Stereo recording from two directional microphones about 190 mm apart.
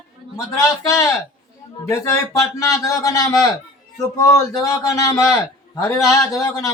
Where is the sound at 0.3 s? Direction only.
15° left (ahead or behind).